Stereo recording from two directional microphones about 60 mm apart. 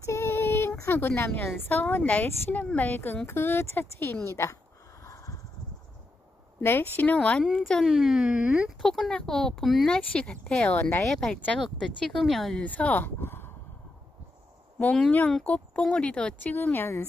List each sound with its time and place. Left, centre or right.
0.0 s child singing: left
1.3 s a woman's voice: left
5.0 s a sound: left
6.6 s a woman's voice: left
7.2 s speech: centre
7.8 s speech: centre
8.8 s speech: centre
9.8 s speech: centre
11.8 s speech: centre
12.6 s speech: left
15.0 s a woman's voice: left
16.5 s a woman's voice: left